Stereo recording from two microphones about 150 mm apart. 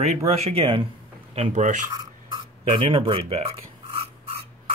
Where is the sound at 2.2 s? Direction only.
35° right (ahead or behind).